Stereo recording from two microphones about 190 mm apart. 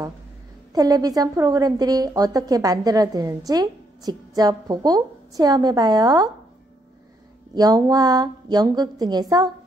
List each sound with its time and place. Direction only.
0.7 s a woman's voice: 20° right (ahead or behind)
7.5 s a woman's voice: 20° right (ahead or behind)